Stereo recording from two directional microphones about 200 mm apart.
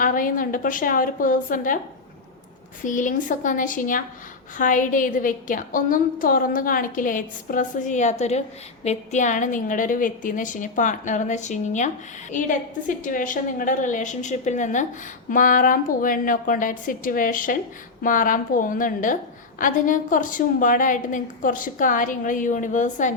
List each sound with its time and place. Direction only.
0.0 s a woman's voice: 40° left (ahead or behind)
2.8 s a woman's voice: 40° left (ahead or behind)
13.0 s a woman's voice: 40° left (ahead or behind)